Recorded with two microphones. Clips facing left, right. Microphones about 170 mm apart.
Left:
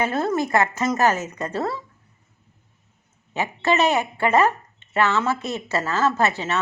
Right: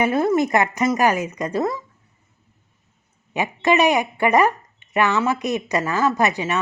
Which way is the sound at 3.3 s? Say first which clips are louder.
Right 3 dB; 15° right (ahead or behind).